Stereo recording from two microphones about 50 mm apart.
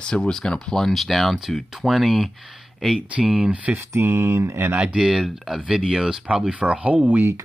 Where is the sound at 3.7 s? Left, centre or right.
Right.